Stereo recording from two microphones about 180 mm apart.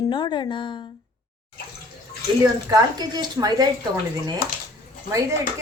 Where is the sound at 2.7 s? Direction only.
25° right (ahead or behind).